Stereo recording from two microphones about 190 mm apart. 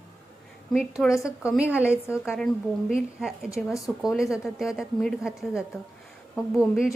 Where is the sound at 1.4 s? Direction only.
5° right (ahead or behind).